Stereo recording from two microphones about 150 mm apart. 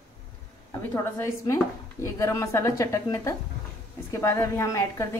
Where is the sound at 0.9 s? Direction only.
20° left (ahead or behind).